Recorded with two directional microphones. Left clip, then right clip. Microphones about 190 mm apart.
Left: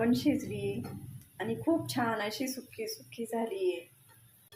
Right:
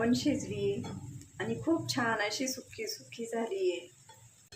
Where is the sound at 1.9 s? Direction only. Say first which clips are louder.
Right 1 dB; 10° left (ahead or behind).